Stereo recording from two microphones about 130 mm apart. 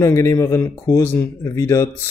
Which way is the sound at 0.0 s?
20° left (ahead or behind).